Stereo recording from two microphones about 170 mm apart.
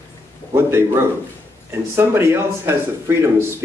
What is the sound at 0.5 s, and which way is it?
Speech, 15° right (ahead or behind).